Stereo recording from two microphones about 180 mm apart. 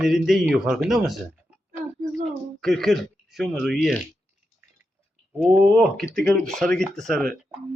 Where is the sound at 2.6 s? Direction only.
Centre (ahead or behind).